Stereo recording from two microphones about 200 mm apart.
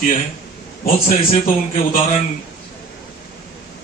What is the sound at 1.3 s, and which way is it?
Speech, 45° left (ahead or behind).